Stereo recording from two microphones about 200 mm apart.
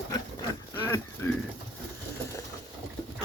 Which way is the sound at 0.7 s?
10° left (ahead or behind).